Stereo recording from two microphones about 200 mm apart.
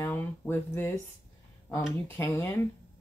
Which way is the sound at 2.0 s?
10° left (ahead or behind).